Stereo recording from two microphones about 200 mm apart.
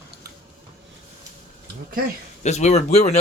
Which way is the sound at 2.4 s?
35° left (ahead or behind).